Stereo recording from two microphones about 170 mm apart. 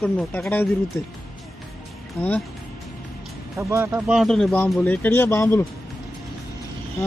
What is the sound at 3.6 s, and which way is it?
Speech, 15° right (ahead or behind).